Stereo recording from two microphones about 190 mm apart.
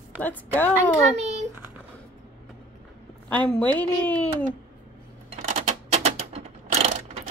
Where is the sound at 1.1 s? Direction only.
35° right (ahead or behind).